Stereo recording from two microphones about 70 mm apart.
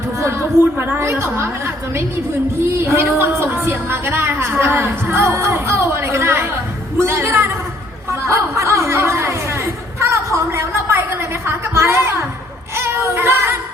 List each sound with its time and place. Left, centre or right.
0.2 s a woman's voice: right
8.3 s chatter: right
12.7 s child singing: right